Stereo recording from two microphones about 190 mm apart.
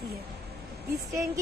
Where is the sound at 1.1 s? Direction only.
15° right (ahead or behind).